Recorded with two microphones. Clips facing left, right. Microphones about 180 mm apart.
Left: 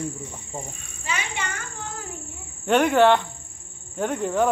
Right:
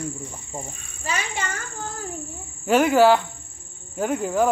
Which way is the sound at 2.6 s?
5° right (ahead or behind).